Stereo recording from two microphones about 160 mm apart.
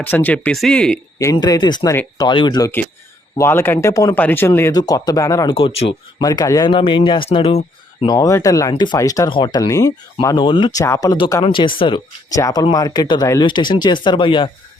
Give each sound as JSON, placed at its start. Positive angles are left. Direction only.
{"t": 0.0, "sound": "speech", "side_deg": 10}
{"t": 1.2, "sound": "speech", "side_deg": 20}
{"t": 5.5, "sound": "speech", "side_deg": 30}
{"t": 8.0, "sound": "speech", "side_deg": 20}
{"t": 10.8, "sound": "speech", "side_deg": 20}